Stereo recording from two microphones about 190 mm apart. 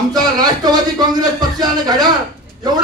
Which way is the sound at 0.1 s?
20° right (ahead or behind).